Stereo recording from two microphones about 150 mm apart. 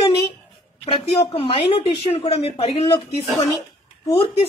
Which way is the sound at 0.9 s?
35° left (ahead or behind).